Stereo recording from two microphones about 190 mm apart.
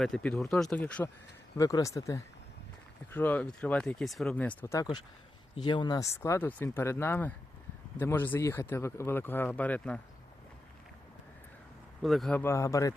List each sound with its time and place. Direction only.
0.0 s speech: 5° left (ahead or behind)
1.5 s speech: 15° left (ahead or behind)
12.0 s speech: centre (ahead or behind); by 12.9 s 15° left (ahead or behind)